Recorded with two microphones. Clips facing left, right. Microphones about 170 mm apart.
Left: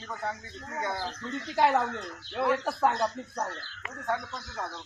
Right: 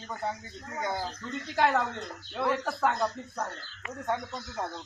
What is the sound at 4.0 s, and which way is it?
Speech, 20° right (ahead or behind).